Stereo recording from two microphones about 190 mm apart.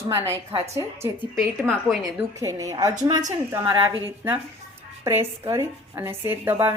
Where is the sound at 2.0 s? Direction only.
15° right (ahead or behind).